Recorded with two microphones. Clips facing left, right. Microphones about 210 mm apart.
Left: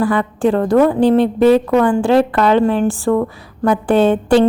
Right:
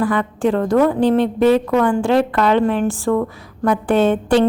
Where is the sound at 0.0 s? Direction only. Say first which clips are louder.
Left 2 dB; 35° left (ahead or behind).